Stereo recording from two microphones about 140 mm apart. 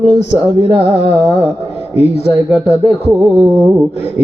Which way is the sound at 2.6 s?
Centre (ahead or behind).